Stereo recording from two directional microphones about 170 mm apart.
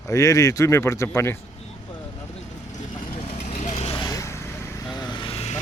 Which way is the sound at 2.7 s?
40° left (ahead or behind).